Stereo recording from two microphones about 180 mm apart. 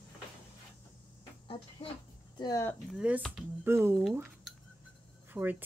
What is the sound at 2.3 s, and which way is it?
Speech, 20° left (ahead or behind).